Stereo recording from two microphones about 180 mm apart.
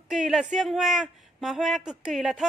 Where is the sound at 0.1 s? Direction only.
Centre (ahead or behind).